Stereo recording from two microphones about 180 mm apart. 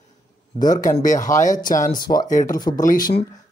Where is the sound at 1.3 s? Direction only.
45° left (ahead or behind).